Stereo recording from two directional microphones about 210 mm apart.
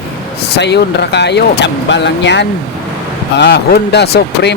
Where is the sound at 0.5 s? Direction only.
55° left (ahead or behind).